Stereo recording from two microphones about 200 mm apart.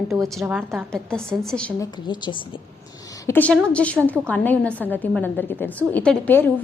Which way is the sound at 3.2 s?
10° left (ahead or behind).